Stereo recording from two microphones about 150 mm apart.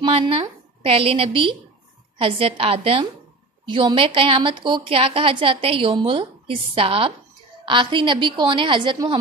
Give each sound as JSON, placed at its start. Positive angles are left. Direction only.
{"t": 0.0, "sound": "a woman's voice", "side_deg": -40}